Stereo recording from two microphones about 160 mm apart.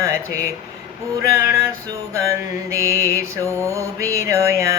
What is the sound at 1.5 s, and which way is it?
Music, 20° right (ahead or behind).